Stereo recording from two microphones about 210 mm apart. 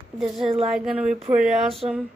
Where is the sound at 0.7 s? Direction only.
5° right (ahead or behind).